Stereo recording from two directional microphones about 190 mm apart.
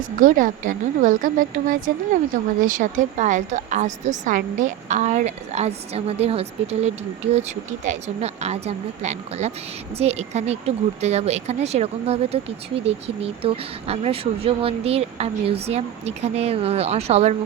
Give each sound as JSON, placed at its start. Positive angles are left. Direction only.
{"t": 0.2, "sound": "a woman's voice", "side_deg": -45}